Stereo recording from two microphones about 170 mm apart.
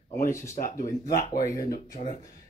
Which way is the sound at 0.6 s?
55° left (ahead or behind).